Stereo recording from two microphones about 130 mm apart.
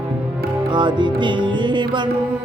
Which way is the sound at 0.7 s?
35° right (ahead or behind).